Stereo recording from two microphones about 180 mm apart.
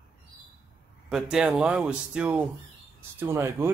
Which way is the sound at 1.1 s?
5° right (ahead or behind).